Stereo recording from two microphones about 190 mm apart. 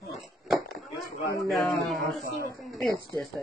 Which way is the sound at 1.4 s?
Centre (ahead or behind).